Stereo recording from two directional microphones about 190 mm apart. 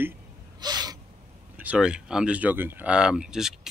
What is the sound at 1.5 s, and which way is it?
Speech, 5° right (ahead or behind).